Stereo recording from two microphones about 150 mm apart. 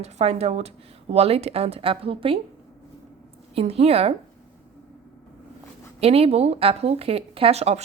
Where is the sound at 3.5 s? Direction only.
40° right (ahead or behind).